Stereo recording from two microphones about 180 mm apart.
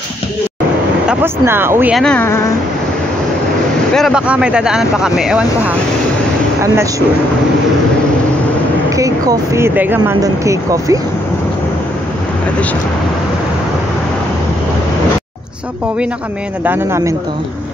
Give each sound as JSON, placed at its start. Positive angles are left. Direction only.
{"t": 1.0, "sound": "speech", "side_deg": -10}
{"t": 2.0, "sound": "speech", "side_deg": 5}
{"t": 3.9, "sound": "speech", "side_deg": 0}
{"t": 8.9, "sound": "speech", "side_deg": -20}
{"t": 16.6, "sound": "speech", "side_deg": -15}